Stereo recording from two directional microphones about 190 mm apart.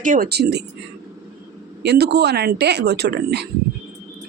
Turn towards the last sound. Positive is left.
turn(degrees=-60)  # may be behind; listen again after turning